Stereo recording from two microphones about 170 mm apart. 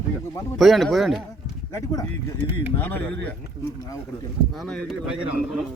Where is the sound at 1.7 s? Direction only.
15° left (ahead or behind).